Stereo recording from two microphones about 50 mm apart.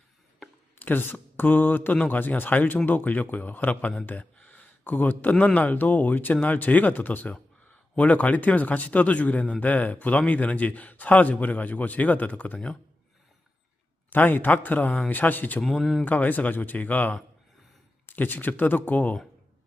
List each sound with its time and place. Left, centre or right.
0.8 s speech: left
1.9 s a man's voice: left
2.1 s a man's voice: left
4.0 s a sound: left
5.5 s a man's voice: left
14.1 s a man's voice: left
15.6 s speech: centre
16.0 s a man's voice: left